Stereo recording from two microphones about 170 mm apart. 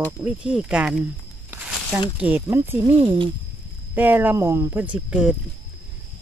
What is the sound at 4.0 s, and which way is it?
Speech, 10° right (ahead or behind).